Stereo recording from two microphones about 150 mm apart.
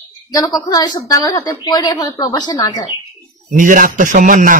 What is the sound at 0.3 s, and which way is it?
A woman's voice, 25° left (ahead or behind).